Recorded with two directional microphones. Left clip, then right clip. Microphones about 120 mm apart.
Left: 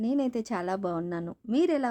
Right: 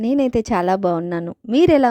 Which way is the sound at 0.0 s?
70° right (ahead or behind).